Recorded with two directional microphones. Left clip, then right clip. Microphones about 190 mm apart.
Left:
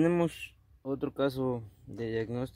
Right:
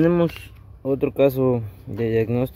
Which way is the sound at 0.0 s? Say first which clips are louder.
Right 9 dB; 10° left (ahead or behind).